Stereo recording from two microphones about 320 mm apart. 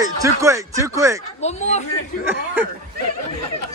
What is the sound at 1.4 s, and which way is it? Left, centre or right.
Speech, left.